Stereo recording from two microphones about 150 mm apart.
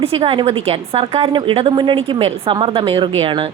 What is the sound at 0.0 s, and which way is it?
A woman's voice, 40° right (ahead or behind).